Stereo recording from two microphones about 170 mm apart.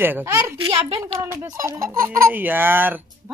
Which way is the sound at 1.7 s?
15° right (ahead or behind).